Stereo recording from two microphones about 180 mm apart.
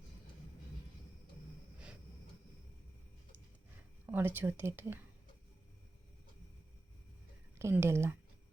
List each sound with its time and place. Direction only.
4.0 s a woman's voice: 10° right (ahead or behind)
7.6 s a woman's voice: 15° right (ahead or behind)